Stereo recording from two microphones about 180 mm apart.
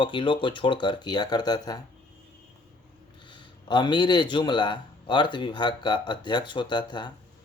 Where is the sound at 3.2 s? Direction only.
25° left (ahead or behind).